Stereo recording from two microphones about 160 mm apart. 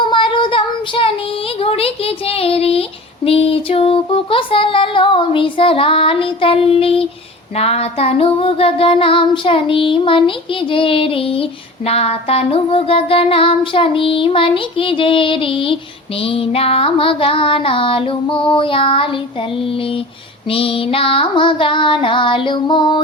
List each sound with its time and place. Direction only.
0.1 s child singing: 30° left (ahead or behind)
1.5 s a sound: 35° left (ahead or behind)
3.2 s child singing: 35° left (ahead or behind)